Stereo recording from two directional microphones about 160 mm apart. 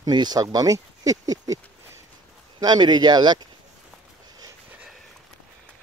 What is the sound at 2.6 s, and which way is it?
Speech, 25° right (ahead or behind).